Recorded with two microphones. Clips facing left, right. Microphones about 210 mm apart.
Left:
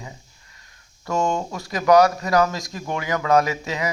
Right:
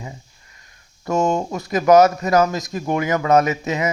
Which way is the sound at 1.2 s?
40° right (ahead or behind).